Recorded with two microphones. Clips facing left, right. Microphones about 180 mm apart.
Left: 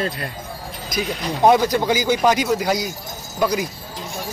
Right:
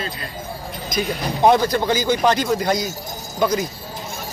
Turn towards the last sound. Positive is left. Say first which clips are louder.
# right 1 dB
turn(degrees=10)  # may be behind; listen again after turning